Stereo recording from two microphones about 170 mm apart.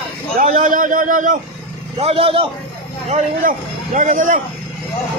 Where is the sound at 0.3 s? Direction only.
45° right (ahead or behind).